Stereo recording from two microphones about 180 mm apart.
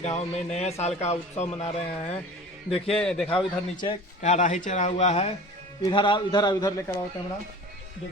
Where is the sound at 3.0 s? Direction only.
5° left (ahead or behind).